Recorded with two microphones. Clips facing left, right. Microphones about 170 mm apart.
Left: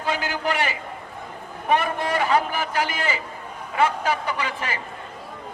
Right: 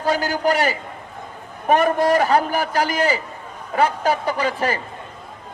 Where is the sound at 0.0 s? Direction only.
40° right (ahead or behind).